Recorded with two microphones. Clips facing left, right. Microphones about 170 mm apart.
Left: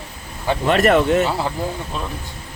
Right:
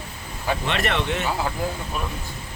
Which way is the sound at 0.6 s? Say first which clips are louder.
Left 13 dB; 45° left (ahead or behind).